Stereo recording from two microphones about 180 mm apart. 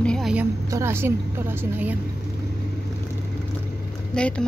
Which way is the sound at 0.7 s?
15° right (ahead or behind).